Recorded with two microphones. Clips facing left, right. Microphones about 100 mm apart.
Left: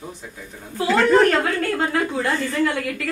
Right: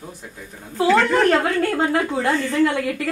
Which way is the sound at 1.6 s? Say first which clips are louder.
Right 2 dB; 25° right (ahead or behind).